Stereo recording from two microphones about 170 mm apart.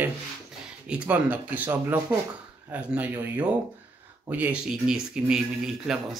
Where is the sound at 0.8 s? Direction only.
10° right (ahead or behind).